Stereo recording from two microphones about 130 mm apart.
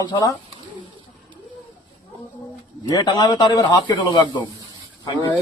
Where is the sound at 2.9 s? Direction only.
30° left (ahead or behind).